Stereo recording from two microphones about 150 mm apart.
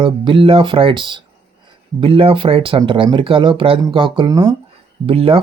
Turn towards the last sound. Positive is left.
turn(degrees=-40)  # may be behind; listen again after turning